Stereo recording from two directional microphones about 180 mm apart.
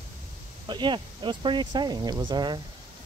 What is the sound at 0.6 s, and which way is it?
Speech, 25° right (ahead or behind).